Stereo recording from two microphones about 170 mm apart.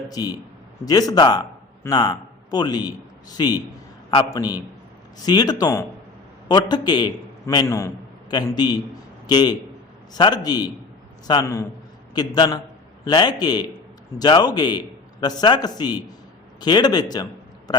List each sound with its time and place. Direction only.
0.1 s a man's voice: 20° left (ahead or behind)
5.2 s a man's voice: 25° left (ahead or behind)